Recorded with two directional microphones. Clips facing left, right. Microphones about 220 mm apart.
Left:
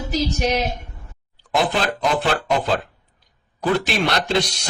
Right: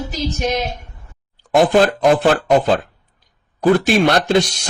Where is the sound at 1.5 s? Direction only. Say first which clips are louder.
Right 8 dB; 50° right (ahead or behind).